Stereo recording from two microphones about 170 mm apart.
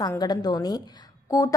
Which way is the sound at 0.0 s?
25° left (ahead or behind).